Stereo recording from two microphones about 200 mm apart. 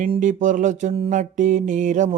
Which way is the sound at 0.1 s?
40° right (ahead or behind).